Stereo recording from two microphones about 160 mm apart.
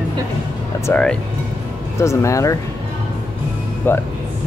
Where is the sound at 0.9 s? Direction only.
10° left (ahead or behind).